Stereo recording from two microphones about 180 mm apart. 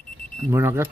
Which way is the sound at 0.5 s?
15° right (ahead or behind).